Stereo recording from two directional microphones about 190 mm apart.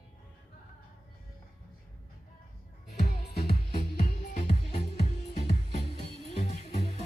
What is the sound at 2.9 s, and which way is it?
Music, 55° left (ahead or behind).